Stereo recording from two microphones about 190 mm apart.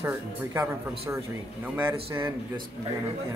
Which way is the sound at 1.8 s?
10° right (ahead or behind).